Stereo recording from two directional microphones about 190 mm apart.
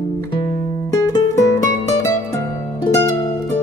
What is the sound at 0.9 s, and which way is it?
Music, 15° left (ahead or behind).